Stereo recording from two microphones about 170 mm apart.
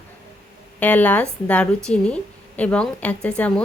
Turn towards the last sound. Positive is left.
turn(degrees=5)  # may be behind; listen again after turning